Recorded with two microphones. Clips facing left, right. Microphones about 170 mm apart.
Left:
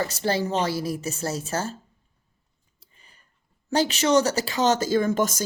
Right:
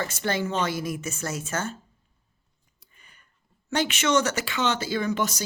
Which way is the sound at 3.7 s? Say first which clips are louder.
Left 3 dB; 35° left (ahead or behind).